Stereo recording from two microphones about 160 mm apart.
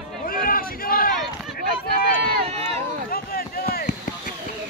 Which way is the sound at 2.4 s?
40° right (ahead or behind).